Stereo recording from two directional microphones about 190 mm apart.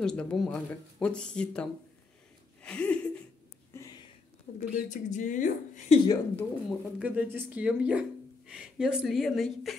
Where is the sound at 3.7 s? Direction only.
15° left (ahead or behind).